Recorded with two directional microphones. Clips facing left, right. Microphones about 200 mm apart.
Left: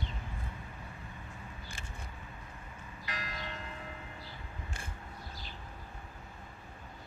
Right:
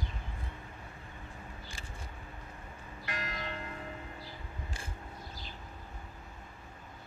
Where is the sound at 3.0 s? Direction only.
50° right (ahead or behind).